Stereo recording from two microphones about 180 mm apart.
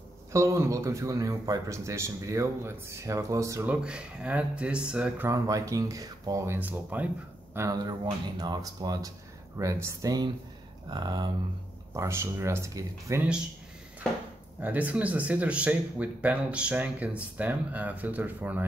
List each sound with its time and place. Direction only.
0.3 s speech: 15° right (ahead or behind)
14.6 s speech: 10° right (ahead or behind)